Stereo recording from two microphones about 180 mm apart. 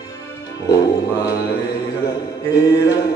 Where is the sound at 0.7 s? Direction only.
20° left (ahead or behind).